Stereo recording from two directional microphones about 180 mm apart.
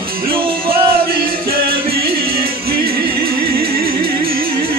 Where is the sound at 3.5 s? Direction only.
55° right (ahead or behind).